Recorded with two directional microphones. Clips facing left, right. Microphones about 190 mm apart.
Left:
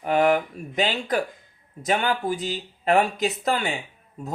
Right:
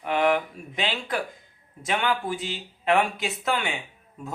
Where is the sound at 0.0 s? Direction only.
40° left (ahead or behind).